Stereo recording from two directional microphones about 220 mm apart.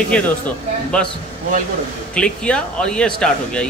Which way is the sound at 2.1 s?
5° left (ahead or behind).